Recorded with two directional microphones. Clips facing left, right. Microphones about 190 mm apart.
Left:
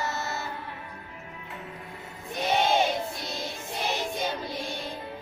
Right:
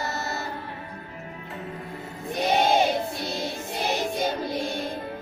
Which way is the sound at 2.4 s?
40° right (ahead or behind).